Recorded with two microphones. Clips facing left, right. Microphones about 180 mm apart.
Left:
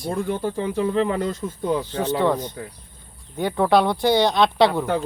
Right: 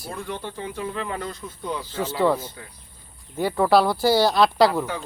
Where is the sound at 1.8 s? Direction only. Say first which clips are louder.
Left 4 dB; 15° left (ahead or behind).